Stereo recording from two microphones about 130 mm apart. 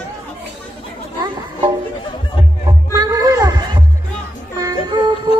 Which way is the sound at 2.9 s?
25° right (ahead or behind).